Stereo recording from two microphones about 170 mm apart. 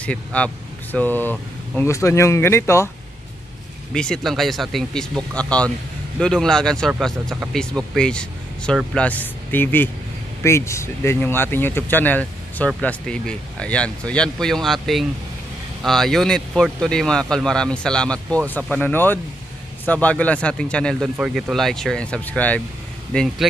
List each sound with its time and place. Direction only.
0.0 s speech: 5° left (ahead or behind)
3.9 s speech: 5° left (ahead or behind)